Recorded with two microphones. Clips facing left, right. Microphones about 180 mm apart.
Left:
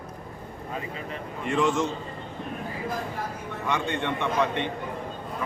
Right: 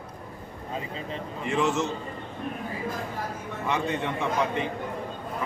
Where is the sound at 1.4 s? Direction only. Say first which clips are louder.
Left 1 dB; 5° right (ahead or behind).